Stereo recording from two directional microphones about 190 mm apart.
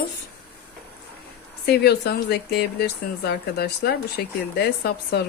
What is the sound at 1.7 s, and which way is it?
Speech, 55° left (ahead or behind).